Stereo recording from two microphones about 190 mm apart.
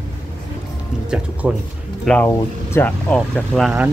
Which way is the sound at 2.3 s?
15° left (ahead or behind).